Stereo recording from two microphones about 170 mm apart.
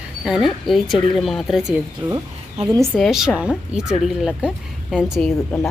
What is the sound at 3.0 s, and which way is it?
A woman's voice, 5° right (ahead or behind).